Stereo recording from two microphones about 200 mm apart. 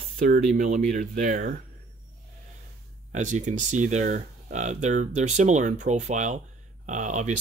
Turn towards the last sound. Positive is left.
turn(degrees=-35)  # may be behind; listen again after turning